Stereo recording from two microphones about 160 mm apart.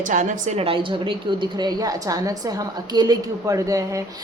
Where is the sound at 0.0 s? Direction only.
50° right (ahead or behind).